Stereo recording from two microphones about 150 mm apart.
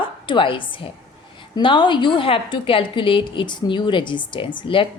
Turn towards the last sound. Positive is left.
turn(degrees=35)  # may be behind; listen again after turning